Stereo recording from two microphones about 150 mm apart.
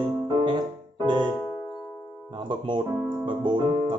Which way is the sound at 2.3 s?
35° right (ahead or behind).